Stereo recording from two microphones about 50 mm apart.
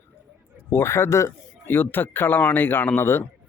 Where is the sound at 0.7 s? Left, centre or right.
Left.